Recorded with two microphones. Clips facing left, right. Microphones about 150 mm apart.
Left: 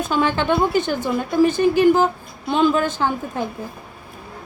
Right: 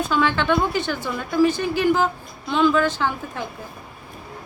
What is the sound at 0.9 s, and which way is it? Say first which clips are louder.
A woman's voice: left 3 dB; 50° left (ahead or behind).